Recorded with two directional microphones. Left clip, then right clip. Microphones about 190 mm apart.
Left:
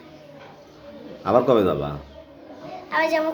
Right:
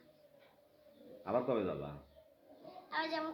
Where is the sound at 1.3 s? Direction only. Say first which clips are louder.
Left 17 dB; 10° left (ahead or behind).